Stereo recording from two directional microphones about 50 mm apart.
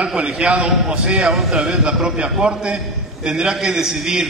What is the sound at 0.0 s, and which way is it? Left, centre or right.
A man's voice, right.